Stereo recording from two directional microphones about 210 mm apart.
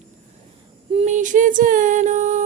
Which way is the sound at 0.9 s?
35° right (ahead or behind).